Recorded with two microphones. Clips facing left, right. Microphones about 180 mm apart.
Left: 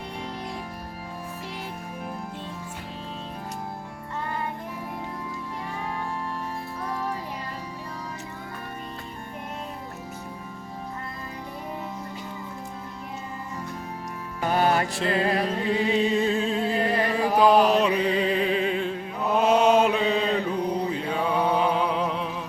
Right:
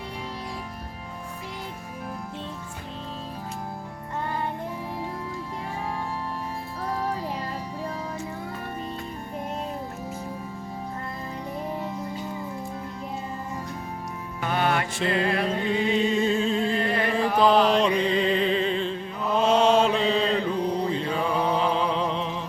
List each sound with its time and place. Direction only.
14.4 s music: 40° left (ahead or behind)
16.0 s music: centre (ahead or behind)